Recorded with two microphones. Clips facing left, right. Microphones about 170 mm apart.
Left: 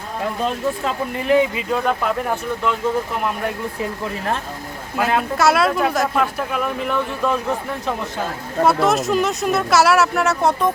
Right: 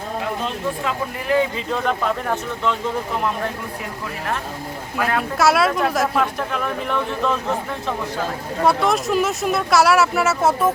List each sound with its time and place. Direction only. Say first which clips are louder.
1.3 s speech: left 3 dB; 15° left (ahead or behind)
5.4 s speech: even; centre (ahead or behind)
8.6 s speech: left 2 dB; centre (ahead or behind)